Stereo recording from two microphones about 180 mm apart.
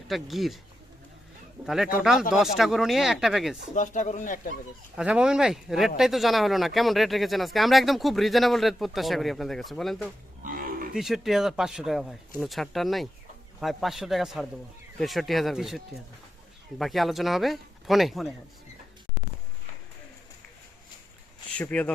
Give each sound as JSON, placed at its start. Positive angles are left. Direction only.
{"t": 0.1, "sound": "speech", "side_deg": 0}
{"t": 1.6, "sound": "speech", "side_deg": 0}
{"t": 3.8, "sound": "speech", "side_deg": 40}
{"t": 4.9, "sound": "speech", "side_deg": -5}
{"t": 10.4, "sound": "roaring cats", "side_deg": -50}
{"t": 10.9, "sound": "speech", "side_deg": 0}
{"t": 21.6, "sound": "speech", "side_deg": 5}